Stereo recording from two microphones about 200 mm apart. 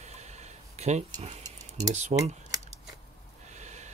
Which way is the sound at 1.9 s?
35° right (ahead or behind).